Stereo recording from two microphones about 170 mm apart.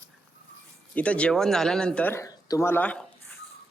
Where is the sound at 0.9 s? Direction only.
5° left (ahead or behind).